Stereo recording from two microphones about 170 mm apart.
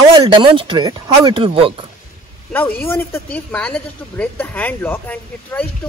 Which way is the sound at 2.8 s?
15° left (ahead or behind).